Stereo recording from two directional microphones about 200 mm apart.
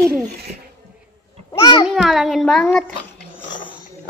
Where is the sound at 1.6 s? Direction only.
25° left (ahead or behind).